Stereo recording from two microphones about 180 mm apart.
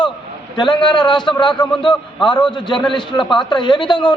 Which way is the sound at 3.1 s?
5° left (ahead or behind).